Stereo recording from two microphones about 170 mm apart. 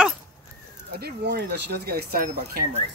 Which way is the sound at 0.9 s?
65° right (ahead or behind).